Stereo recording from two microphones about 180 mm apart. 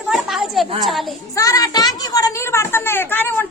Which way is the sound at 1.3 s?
20° left (ahead or behind).